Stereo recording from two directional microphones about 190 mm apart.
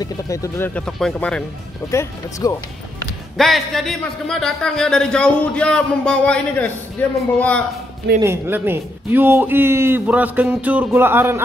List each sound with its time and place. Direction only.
0.0 s speech: 15° left (ahead or behind)
0.7 s a man's voice: 5° left (ahead or behind)
1.9 s speech: 15° left (ahead or behind)
3.3 s a man's voice: centre (ahead or behind)
8.2 s speech: 10° right (ahead or behind)